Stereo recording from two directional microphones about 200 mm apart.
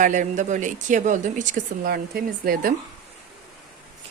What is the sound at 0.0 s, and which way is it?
Speech, 40° right (ahead or behind).